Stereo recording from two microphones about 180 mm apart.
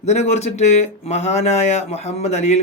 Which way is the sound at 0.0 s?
40° left (ahead or behind).